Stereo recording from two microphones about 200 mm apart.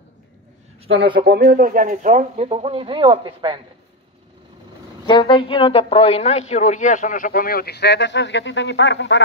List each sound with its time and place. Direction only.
0.8 s speech: 25° right (ahead or behind)
1.2 s speech: 50° right (ahead or behind); by 3.5 s 25° right (ahead or behind)
5.0 s a woman's voice: 25° left (ahead or behind); by 9.2 s 65° left (ahead or behind)